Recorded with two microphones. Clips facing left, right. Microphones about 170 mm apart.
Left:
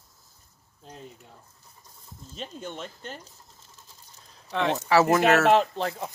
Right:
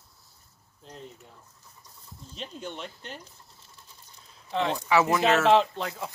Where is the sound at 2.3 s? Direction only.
45° left (ahead or behind).